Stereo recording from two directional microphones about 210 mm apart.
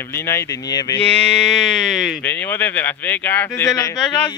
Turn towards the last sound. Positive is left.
turn(degrees=15)  # may be behind; listen again after turning